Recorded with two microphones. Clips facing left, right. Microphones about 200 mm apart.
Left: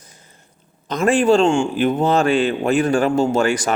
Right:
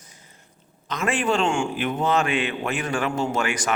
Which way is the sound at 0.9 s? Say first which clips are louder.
Left 9 dB; 35° left (ahead or behind).